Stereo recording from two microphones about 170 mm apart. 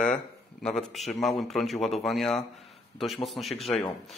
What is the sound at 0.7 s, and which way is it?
A man's voice, centre (ahead or behind).